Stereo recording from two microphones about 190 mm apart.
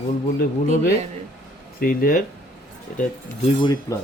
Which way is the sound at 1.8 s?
50° left (ahead or behind).